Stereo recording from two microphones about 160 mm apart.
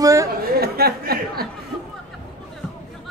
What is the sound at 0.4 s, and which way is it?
Chatter, 80° right.